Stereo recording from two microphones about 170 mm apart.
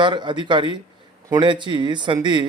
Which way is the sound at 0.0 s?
30° right (ahead or behind).